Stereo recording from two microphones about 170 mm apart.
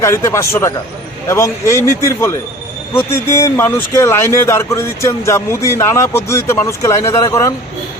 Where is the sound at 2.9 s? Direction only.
15° left (ahead or behind).